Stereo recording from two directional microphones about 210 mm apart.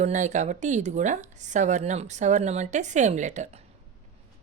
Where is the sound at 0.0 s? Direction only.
35° right (ahead or behind).